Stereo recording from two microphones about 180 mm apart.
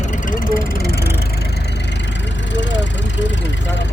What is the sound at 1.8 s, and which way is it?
Vehicle, 75° left (ahead or behind).